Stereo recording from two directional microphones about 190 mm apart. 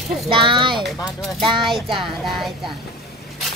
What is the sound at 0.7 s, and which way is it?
Speech, centre (ahead or behind).